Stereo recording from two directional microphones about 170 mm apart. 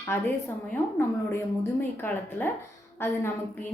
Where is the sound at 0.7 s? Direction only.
15° left (ahead or behind).